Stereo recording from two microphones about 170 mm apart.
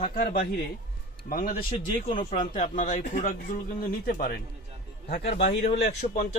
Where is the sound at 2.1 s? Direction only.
30° left (ahead or behind).